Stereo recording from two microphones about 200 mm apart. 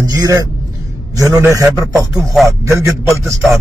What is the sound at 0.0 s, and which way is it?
A man's voice, 20° right (ahead or behind).